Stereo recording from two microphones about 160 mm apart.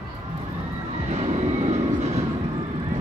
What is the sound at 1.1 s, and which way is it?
Vehicle, 40° right (ahead or behind).